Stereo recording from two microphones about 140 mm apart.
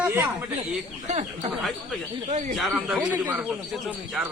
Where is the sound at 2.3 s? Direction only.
55° right (ahead or behind).